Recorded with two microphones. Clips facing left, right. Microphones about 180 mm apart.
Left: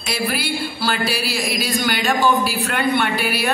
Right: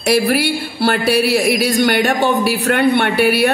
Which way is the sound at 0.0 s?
70° right (ahead or behind).